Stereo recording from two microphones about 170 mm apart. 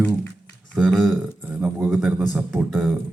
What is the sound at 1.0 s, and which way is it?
A man's voice, 10° right (ahead or behind).